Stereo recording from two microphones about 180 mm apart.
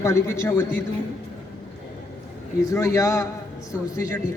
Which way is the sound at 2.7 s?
15° left (ahead or behind).